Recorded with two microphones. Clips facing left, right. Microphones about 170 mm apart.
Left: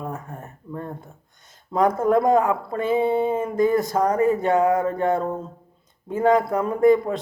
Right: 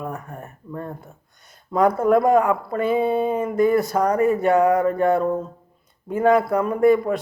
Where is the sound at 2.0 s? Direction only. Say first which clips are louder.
Right 1 dB; 20° left (ahead or behind).